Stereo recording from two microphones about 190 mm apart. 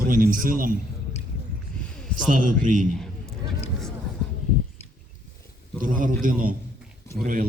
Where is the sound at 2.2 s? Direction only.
45° right (ahead or behind).